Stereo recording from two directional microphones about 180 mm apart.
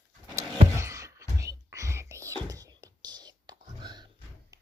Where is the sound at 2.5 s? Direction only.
20° right (ahead or behind).